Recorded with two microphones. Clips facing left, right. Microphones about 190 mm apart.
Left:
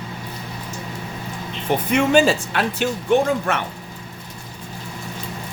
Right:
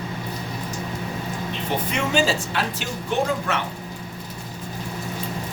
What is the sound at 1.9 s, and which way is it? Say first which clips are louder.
Speech: left 7 dB; 55° left (ahead or behind).